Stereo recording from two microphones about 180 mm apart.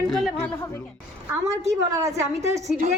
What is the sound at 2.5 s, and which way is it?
Speech, 40° right (ahead or behind).